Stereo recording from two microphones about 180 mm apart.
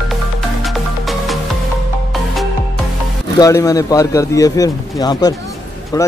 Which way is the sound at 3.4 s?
20° left (ahead or behind).